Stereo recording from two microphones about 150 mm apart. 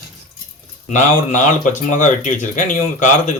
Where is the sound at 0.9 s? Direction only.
55° left (ahead or behind).